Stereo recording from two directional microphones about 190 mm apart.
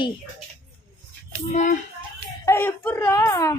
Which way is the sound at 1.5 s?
40° left (ahead or behind).